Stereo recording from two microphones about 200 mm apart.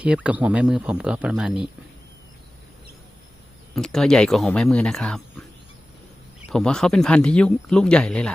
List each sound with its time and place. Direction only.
0.0 s speech: 5° right (ahead or behind)
3.8 s speech: 5° left (ahead or behind)
6.5 s speech: 5° left (ahead or behind)